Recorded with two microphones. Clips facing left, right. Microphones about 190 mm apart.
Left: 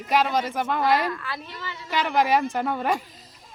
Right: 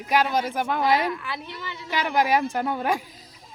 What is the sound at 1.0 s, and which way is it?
Speech, 15° right (ahead or behind).